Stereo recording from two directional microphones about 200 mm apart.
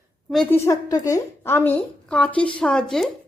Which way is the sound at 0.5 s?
15° left (ahead or behind).